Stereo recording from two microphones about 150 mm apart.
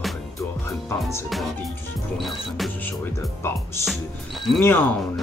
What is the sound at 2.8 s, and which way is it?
Speech, 15° left (ahead or behind).